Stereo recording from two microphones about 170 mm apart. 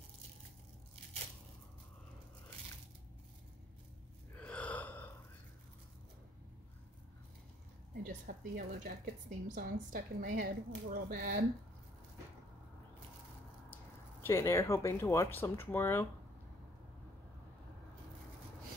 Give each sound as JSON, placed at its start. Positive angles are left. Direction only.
{"t": 4.4, "sound": "gasp", "side_deg": 10}
{"t": 7.9, "sound": "a woman's voice", "side_deg": -60}
{"t": 14.2, "sound": "speech", "side_deg": 15}